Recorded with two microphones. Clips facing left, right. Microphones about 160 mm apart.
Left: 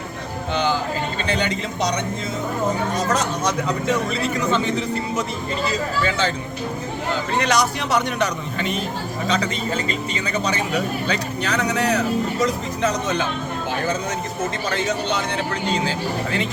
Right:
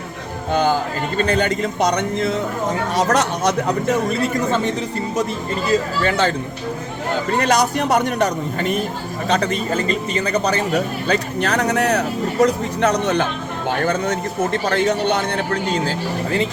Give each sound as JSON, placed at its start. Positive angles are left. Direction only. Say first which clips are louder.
{"t": 0.5, "sound": "speech", "louder": "right 4 dB", "side_deg": -50}
{"t": 2.9, "sound": "speech", "louder": "right 4 dB", "side_deg": -80}
{"t": 6.1, "sound": "a man's voice", "louder": "right 6 dB", "side_deg": -55}
{"t": 7.4, "sound": "a man's voice", "louder": "right 4 dB", "side_deg": -50}